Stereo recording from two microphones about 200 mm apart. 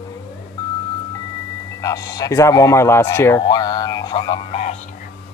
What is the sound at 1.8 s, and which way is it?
Speech, 20° left (ahead or behind).